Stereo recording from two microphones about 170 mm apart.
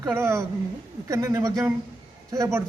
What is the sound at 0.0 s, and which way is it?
Speech, 15° right (ahead or behind).